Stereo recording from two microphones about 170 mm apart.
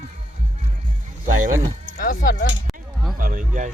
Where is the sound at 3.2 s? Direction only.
50° right (ahead or behind).